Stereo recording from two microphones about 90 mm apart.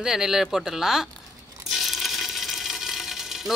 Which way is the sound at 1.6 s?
Centre (ahead or behind).